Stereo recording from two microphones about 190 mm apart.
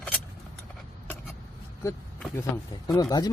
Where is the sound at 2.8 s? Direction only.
20° left (ahead or behind).